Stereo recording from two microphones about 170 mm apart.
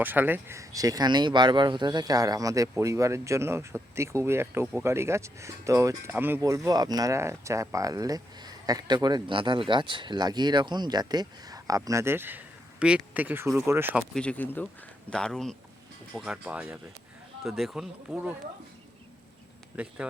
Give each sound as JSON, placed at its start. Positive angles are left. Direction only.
{"t": 0.0, "sound": "speech", "side_deg": -10}
{"t": 14.1, "sound": "speech", "side_deg": 5}
{"t": 19.7, "sound": "speech", "side_deg": -10}